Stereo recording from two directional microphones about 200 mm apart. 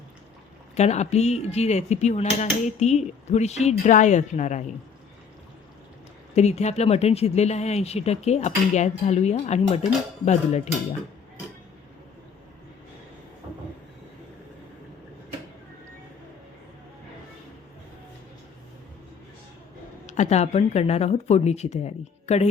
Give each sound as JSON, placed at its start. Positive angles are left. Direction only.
{"t": 0.8, "sound": "speech", "side_deg": 35}
{"t": 6.3, "sound": "speech", "side_deg": 35}
{"t": 20.1, "sound": "speech", "side_deg": 35}